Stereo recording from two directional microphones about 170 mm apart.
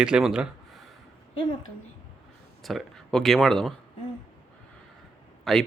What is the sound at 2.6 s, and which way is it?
Speech, centre (ahead or behind).